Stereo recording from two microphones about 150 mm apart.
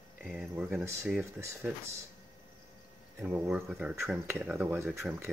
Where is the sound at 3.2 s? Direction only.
10° right (ahead or behind).